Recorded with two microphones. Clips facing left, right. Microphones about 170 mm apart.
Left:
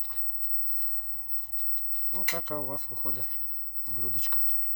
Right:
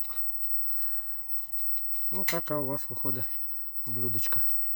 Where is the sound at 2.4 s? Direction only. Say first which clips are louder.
Right 4 dB; 65° right (ahead or behind).